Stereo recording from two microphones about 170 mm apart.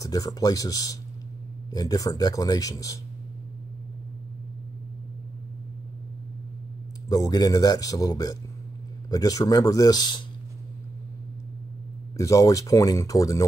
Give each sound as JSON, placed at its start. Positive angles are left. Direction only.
{"t": 0.0, "sound": "a man's voice", "side_deg": 20}
{"t": 7.1, "sound": "a man's voice", "side_deg": 20}
{"t": 12.2, "sound": "a man's voice", "side_deg": 20}